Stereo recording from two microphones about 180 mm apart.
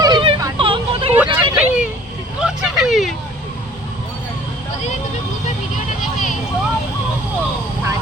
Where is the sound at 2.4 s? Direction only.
5° right (ahead or behind).